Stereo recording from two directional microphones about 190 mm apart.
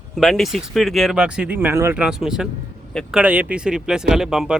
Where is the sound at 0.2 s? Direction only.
Centre (ahead or behind).